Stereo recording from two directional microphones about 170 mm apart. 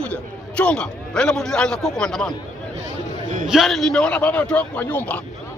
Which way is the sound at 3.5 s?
Centre (ahead or behind).